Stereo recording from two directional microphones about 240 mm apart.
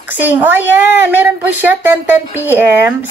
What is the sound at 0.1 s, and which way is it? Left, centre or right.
A woman's voice, centre.